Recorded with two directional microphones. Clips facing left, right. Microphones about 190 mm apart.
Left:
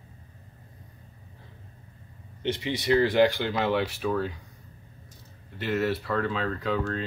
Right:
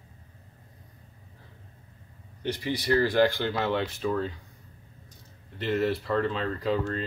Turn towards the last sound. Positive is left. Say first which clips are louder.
# even
turn(degrees=0)  # may be behind; listen again after turning